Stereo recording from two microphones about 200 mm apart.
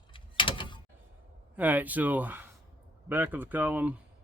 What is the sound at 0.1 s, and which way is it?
Door, 25° left (ahead or behind).